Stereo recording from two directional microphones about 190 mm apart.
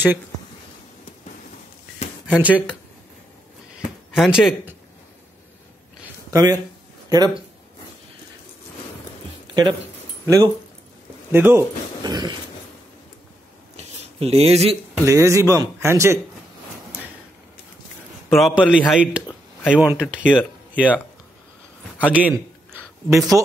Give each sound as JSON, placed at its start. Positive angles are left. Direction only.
{"t": 2.2, "sound": "a man's voice", "side_deg": -5}
{"t": 4.1, "sound": "a man's voice", "side_deg": -5}
{"t": 6.3, "sound": "speech", "side_deg": -20}
{"t": 9.5, "sound": "speech", "side_deg": -25}
{"t": 13.7, "sound": "a sound", "side_deg": -30}
{"t": 15.0, "sound": "a man's voice", "side_deg": -15}
{"t": 18.3, "sound": "a man's voice", "side_deg": -5}
{"t": 21.9, "sound": "a man's voice", "side_deg": -10}